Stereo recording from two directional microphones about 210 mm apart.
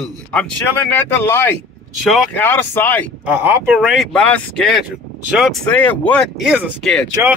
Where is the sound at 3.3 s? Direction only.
10° right (ahead or behind).